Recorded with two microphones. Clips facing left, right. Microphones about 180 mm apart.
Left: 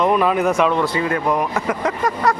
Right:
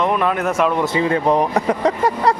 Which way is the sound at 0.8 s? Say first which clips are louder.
Right 2 dB; 25° right (ahead or behind).